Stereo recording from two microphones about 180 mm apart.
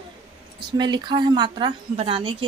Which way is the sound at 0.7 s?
25° right (ahead or behind).